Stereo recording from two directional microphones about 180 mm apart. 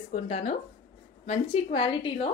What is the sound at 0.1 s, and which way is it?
A woman's voice, 40° left (ahead or behind).